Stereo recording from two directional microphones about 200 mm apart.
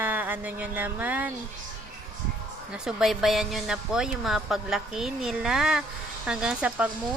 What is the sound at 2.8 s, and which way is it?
Speech, centre (ahead or behind).